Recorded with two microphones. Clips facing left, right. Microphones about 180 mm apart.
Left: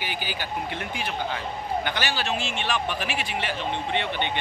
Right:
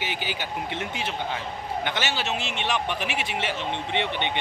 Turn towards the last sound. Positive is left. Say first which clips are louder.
# even
turn(degrees=-20)  # may be behind; listen again after turning